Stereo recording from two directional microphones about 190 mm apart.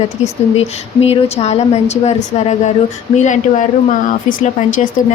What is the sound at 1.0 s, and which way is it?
A woman's voice, 35° left (ahead or behind).